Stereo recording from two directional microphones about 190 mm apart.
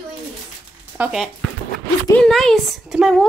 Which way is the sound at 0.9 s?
Centre (ahead or behind).